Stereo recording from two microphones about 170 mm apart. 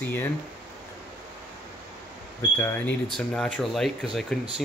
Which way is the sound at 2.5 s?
10° left (ahead or behind).